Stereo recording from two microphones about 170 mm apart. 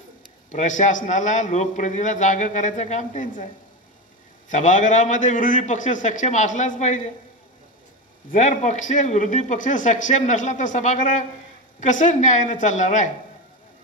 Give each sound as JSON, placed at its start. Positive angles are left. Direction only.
{"t": 0.5, "sound": "a man's voice", "side_deg": 45}
{"t": 4.5, "sound": "a man's voice", "side_deg": 45}
{"t": 8.3, "sound": "a man's voice", "side_deg": 45}